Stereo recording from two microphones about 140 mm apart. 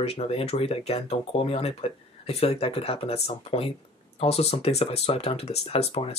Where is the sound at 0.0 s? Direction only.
45° left (ahead or behind).